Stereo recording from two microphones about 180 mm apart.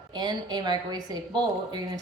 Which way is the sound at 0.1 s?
25° right (ahead or behind).